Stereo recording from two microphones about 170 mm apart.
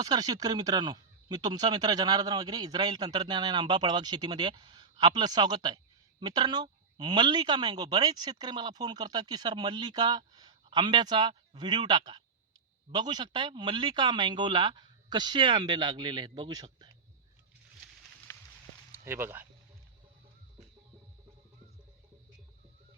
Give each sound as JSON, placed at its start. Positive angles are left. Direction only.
{"t": 0.0, "sound": "speech", "side_deg": -20}
{"t": 18.3, "sound": "a sound", "side_deg": 15}
{"t": 18.9, "sound": "speech", "side_deg": -15}